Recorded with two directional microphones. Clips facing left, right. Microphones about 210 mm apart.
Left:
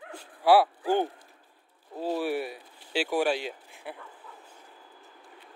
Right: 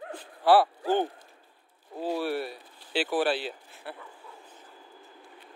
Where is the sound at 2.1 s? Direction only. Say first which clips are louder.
Left 1 dB; 15° left (ahead or behind).